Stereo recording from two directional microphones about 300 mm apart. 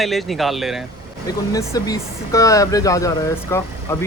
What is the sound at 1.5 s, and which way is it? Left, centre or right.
Speech, centre.